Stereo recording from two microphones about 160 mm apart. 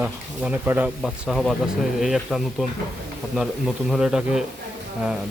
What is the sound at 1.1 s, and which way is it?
Speech, centre (ahead or behind).